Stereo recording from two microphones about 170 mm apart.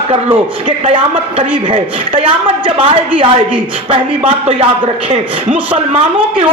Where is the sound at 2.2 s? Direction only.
35° right (ahead or behind).